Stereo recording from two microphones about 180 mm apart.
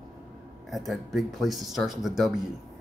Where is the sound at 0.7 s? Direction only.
Centre (ahead or behind).